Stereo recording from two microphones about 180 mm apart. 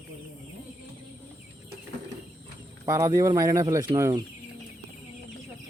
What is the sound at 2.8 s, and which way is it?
Speech, 20° right (ahead or behind).